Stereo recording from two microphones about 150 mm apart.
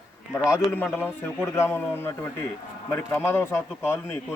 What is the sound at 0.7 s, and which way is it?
Speech, 10° left (ahead or behind).